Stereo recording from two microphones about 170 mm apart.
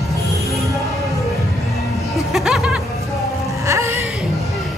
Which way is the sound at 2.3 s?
Centre (ahead or behind).